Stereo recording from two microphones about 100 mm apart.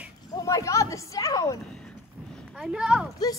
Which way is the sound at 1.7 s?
10° left (ahead or behind).